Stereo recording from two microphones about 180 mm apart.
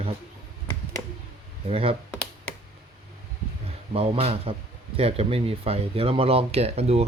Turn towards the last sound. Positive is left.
turn(degrees=-35)  # may be behind; listen again after turning